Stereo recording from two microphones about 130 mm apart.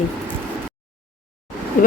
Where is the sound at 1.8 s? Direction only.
90° left.